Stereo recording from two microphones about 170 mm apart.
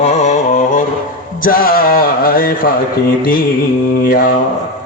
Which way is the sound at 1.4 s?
55° left (ahead or behind).